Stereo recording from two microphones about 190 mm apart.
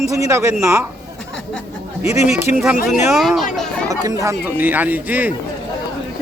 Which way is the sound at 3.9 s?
20° right (ahead or behind).